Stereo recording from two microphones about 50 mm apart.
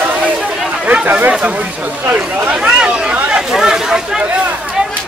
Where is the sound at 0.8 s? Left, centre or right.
Right.